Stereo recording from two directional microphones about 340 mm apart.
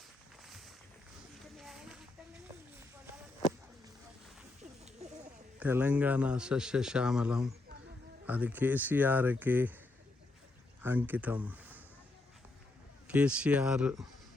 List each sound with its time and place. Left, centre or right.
0.4 s a sound: centre
5.5 s a man's voice: centre
10.8 s speech: centre
13.1 s a man's voice: centre